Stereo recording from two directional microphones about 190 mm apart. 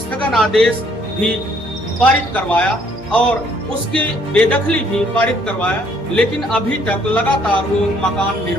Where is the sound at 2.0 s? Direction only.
10° left (ahead or behind).